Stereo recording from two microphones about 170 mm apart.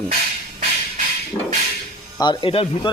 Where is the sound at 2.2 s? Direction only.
25° left (ahead or behind).